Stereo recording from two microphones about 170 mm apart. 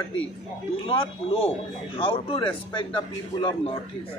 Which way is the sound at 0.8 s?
30° left (ahead or behind).